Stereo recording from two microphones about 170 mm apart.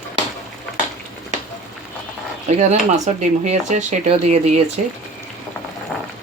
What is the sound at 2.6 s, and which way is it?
Speech, 45° right (ahead or behind).